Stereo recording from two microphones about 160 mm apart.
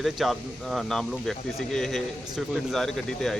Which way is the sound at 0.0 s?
Centre (ahead or behind).